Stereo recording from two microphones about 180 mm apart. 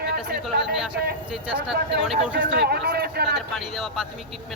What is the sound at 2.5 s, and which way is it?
Speech, 65° right (ahead or behind).